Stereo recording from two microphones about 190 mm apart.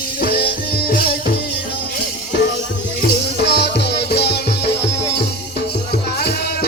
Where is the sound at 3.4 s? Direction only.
60° left (ahead or behind).